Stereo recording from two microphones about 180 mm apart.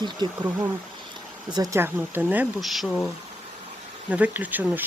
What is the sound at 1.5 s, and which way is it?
Speech, 20° right (ahead or behind).